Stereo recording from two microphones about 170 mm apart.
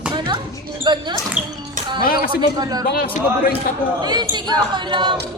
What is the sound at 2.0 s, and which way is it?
Speech, 60° left (ahead or behind).